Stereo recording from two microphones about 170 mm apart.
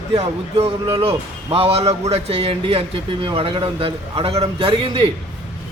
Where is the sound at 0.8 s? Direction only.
30° right (ahead or behind).